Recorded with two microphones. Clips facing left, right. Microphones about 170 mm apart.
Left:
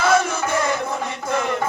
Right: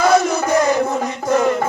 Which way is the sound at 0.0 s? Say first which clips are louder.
Right 4 dB; 40° right (ahead or behind).